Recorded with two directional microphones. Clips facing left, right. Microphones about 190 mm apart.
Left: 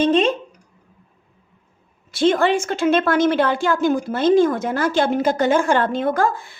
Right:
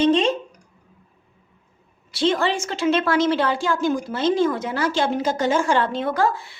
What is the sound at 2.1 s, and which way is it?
A woman's voice, 50° left (ahead or behind).